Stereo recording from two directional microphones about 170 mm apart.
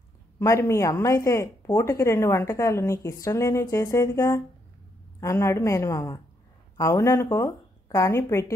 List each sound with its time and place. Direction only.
0.4 s speech: 15° left (ahead or behind)